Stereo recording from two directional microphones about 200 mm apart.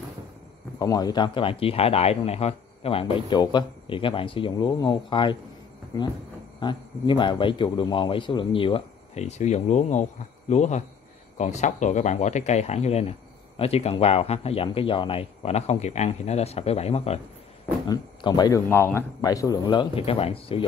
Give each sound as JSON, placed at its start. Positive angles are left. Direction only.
{"t": 0.7, "sound": "speech", "side_deg": 20}
{"t": 6.6, "sound": "speech", "side_deg": 25}
{"t": 17.8, "sound": "speech", "side_deg": 20}